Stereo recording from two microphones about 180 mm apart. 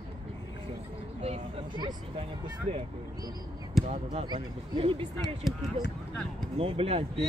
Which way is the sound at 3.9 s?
40° right (ahead or behind).